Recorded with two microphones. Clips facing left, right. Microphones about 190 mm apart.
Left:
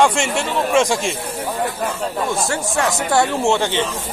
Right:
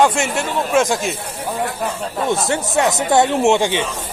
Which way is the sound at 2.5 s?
20° right (ahead or behind).